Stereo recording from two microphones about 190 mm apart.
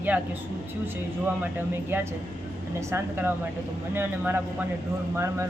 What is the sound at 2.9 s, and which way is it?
A woman's voice, 10° right (ahead or behind).